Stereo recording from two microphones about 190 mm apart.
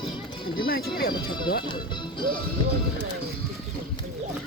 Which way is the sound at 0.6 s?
55° left (ahead or behind).